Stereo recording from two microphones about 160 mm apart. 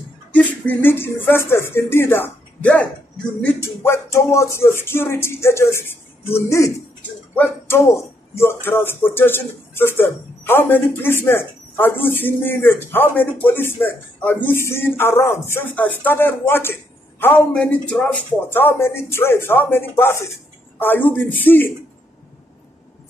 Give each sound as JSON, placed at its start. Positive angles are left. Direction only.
{"t": 0.3, "sound": "speech", "side_deg": 10}